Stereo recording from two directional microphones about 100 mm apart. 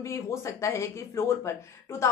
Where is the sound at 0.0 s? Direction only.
30° left (ahead or behind).